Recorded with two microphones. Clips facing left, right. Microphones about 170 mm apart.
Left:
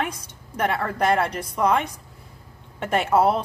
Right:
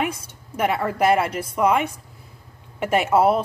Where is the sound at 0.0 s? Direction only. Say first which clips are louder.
Right 3 dB; 10° right (ahead or behind).